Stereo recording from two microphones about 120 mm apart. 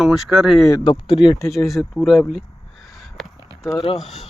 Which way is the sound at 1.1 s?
45° left (ahead or behind).